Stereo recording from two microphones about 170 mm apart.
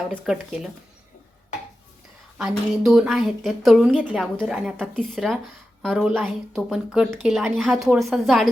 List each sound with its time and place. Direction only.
0.3 s a woman's voice: 5° right (ahead or behind)
2.4 s a woman's voice: centre (ahead or behind)